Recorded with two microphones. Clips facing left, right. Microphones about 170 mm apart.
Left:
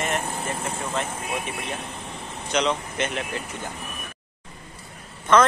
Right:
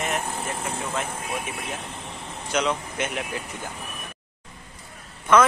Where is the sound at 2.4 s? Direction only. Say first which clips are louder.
Left 1 dB; 5° right (ahead or behind).